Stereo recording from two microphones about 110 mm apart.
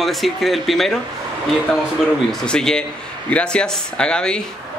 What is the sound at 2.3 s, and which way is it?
Speech, 5° left (ahead or behind).